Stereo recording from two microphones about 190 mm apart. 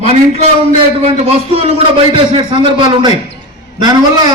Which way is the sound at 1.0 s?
30° right (ahead or behind).